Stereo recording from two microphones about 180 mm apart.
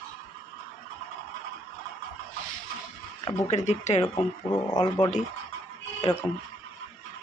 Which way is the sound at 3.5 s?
40° left (ahead or behind).